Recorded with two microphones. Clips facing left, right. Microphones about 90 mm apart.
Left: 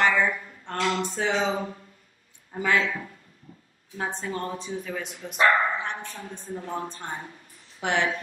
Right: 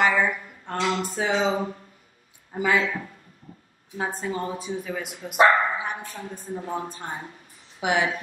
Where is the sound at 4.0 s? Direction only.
5° right (ahead or behind).